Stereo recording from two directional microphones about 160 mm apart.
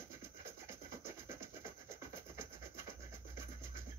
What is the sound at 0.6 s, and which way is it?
Rub, 15° right (ahead or behind).